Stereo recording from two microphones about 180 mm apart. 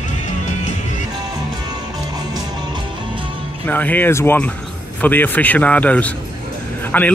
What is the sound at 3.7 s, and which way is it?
A man's voice, 10° left (ahead or behind).